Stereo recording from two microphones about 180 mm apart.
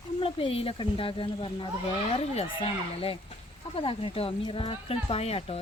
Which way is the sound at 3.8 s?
30° left (ahead or behind).